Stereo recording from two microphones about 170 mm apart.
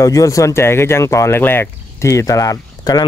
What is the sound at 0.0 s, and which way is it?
Speech, 20° left (ahead or behind).